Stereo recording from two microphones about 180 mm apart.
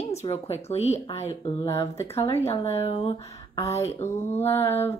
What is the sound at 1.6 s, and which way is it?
Speech, 15° left (ahead or behind).